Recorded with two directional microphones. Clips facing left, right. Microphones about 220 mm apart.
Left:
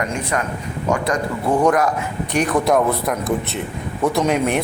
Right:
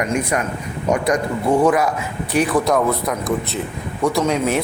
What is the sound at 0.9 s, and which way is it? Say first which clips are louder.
Speech: right 2 dB; 20° right (ahead or behind).